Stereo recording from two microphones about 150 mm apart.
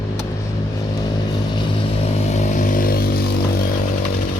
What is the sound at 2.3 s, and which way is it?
Vehicle, 60° left (ahead or behind).